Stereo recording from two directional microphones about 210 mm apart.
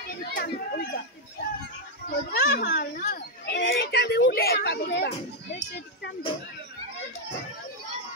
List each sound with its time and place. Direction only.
0.3 s chatter: 45° left (ahead or behind)
2.0 s children playing: 50° left (ahead or behind)